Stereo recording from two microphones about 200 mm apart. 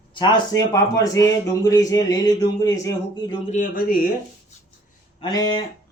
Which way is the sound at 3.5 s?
40° left (ahead or behind).